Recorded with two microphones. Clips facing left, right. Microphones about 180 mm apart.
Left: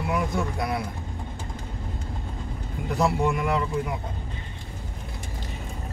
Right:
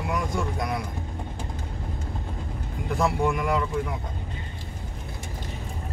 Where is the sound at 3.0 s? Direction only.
Centre (ahead or behind).